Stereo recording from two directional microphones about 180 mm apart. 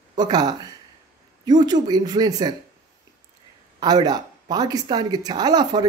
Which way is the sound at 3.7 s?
20° right (ahead or behind).